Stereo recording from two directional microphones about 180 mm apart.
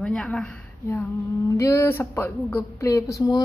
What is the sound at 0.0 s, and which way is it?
Speech, 5° left (ahead or behind).